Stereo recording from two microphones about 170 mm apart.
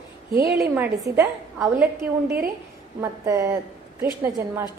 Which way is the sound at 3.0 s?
20° right (ahead or behind).